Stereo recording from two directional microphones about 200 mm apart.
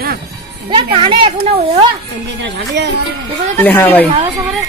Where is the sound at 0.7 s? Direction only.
25° right (ahead or behind).